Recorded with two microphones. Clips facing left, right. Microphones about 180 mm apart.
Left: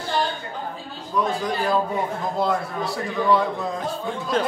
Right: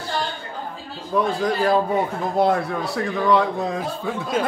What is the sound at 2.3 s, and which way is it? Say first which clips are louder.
A man's voice: right 6 dB; 65° right (ahead or behind).